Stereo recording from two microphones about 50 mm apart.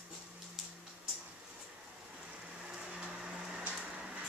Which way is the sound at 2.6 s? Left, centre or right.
Centre.